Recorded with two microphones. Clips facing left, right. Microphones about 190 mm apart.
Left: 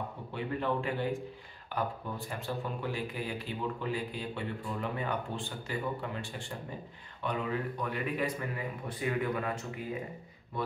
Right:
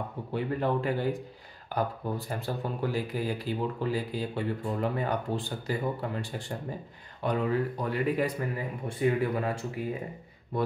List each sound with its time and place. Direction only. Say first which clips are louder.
0.3 s speech: right 4 dB; 40° right (ahead or behind)
7.2 s speech: right 6 dB; 35° right (ahead or behind)